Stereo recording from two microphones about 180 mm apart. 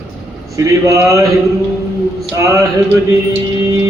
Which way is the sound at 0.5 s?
15° right (ahead or behind).